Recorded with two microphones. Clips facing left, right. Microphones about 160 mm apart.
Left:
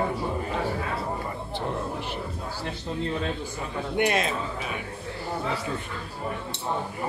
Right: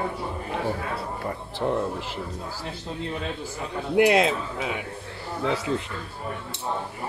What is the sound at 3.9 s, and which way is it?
Speech, 90° right.